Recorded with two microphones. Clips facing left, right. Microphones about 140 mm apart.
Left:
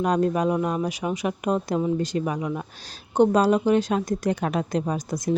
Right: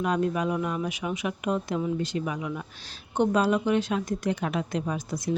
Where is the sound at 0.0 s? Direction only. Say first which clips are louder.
Left 4 dB; 40° left (ahead or behind).